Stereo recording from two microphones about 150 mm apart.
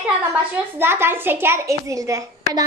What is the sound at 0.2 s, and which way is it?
A child's voice, 15° right (ahead or behind).